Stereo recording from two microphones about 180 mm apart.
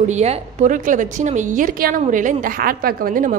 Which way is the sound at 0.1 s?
40° right (ahead or behind).